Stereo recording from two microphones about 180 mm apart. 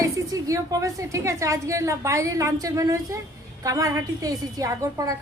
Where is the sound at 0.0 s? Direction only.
20° right (ahead or behind).